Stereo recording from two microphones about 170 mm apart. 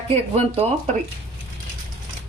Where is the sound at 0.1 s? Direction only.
35° right (ahead or behind).